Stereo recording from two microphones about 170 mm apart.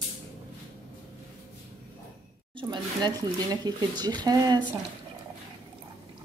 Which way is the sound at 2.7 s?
25° right (ahead or behind).